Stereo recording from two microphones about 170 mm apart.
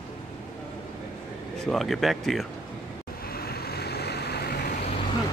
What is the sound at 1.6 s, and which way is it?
Speech, centre (ahead or behind).